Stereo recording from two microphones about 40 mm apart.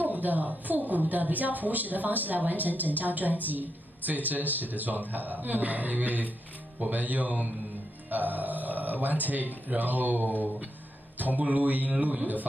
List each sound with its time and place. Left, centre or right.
0.0 s a woman's voice: right